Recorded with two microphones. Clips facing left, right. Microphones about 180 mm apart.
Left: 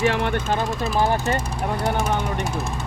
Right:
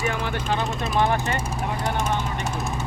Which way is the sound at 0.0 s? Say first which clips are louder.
Left 6 dB; 70° left (ahead or behind).